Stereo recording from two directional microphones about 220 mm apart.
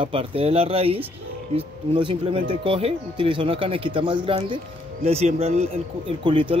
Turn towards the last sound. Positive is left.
turn(degrees=-25)  # may be behind; listen again after turning